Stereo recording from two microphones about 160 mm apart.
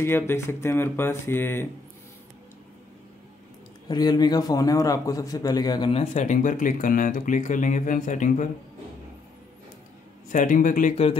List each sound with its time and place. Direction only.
0.0 s speech: 15° left (ahead or behind)
3.9 s a man's voice: 25° left (ahead or behind)
5.9 s speech: 35° left (ahead or behind)
6.2 s speech: 50° left (ahead or behind)
10.2 s a man's voice: 55° left (ahead or behind)